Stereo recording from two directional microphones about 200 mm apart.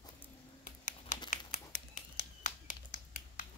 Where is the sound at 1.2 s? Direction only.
40° left (ahead or behind).